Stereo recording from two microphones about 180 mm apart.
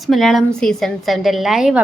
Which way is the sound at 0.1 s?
Centre (ahead or behind).